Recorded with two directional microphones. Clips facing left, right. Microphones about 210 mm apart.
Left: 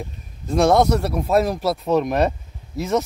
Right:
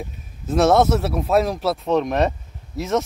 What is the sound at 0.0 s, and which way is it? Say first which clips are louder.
A man's voice: right 1 dB; 5° right (ahead or behind).